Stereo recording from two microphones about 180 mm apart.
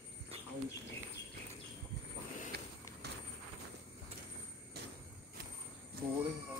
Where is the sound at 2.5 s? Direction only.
65° right (ahead or behind).